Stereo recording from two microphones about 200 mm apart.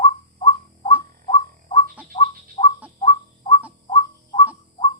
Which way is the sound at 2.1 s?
30° left (ahead or behind).